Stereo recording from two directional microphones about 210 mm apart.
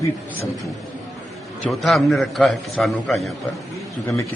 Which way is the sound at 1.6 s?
Centre (ahead or behind).